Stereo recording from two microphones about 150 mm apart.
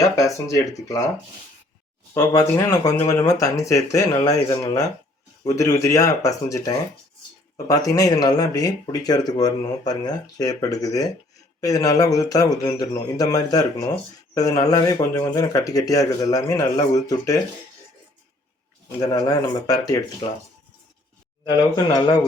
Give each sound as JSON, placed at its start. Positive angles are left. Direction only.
{"t": 0.2, "sound": "speech", "side_deg": 20}
{"t": 2.1, "sound": "speech", "side_deg": 20}
{"t": 18.9, "sound": "speech", "side_deg": 25}
{"t": 21.4, "sound": "speech", "side_deg": 25}